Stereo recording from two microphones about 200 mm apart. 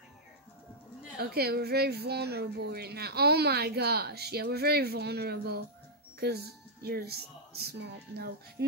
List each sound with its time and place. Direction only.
1.2 s speech: 50° right (ahead or behind)